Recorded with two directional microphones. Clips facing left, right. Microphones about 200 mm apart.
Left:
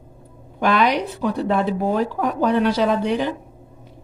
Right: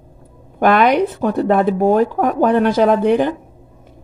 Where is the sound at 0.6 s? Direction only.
55° right (ahead or behind).